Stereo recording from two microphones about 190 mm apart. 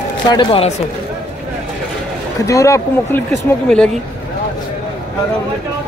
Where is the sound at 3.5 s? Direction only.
5° left (ahead or behind).